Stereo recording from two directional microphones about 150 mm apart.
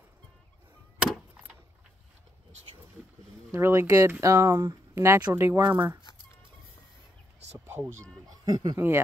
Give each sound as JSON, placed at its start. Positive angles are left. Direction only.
{"t": 0.9, "sound": "vehicle", "side_deg": -5}
{"t": 3.5, "sound": "speech", "side_deg": -20}
{"t": 5.6, "sound": "speech", "side_deg": -30}
{"t": 7.5, "sound": "speech", "side_deg": -15}
{"t": 8.3, "sound": "speech", "side_deg": -30}
{"t": 8.7, "sound": "speech", "side_deg": -15}